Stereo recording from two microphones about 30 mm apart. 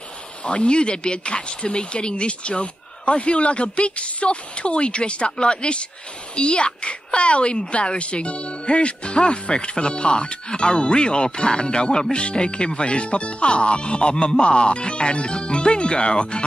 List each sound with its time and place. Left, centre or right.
0.4 s a woman's voice: left